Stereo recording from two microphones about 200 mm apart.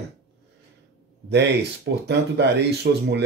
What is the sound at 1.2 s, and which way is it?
Speech, 60° right (ahead or behind).